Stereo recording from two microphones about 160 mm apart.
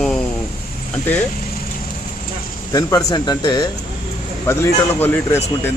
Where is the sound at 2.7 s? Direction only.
20° left (ahead or behind).